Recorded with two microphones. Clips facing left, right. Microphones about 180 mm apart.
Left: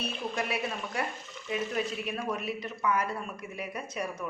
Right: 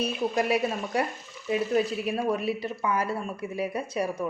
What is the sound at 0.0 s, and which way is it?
Speech, 40° right (ahead or behind).